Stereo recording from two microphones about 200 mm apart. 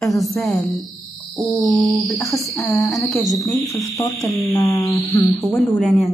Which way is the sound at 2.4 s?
15° left (ahead or behind).